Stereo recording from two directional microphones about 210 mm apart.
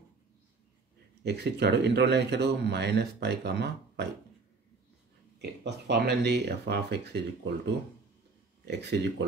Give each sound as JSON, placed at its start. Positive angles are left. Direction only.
{"t": 1.2, "sound": "speech", "side_deg": -55}
{"t": 5.4, "sound": "speech", "side_deg": -55}